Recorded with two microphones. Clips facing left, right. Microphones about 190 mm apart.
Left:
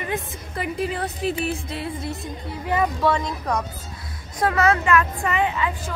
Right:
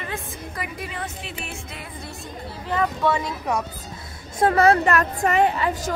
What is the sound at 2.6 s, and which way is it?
Speech, 10° left (ahead or behind).